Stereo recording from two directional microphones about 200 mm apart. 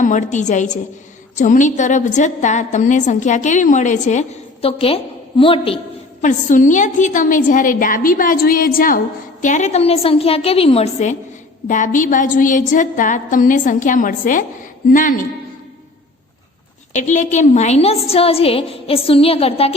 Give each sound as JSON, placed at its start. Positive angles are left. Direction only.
{"t": 0.0, "sound": "a woman's voice", "side_deg": 40}
{"t": 6.2, "sound": "a woman's voice", "side_deg": 40}
{"t": 16.9, "sound": "a woman's voice", "side_deg": 35}